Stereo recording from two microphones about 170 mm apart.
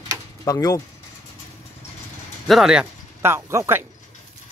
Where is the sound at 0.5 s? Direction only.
20° left (ahead or behind).